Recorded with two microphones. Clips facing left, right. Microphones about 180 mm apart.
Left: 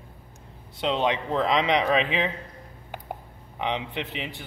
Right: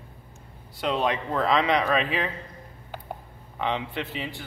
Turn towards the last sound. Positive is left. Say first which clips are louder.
# right 1 dB
turn(degrees=20)  # may be behind; listen again after turning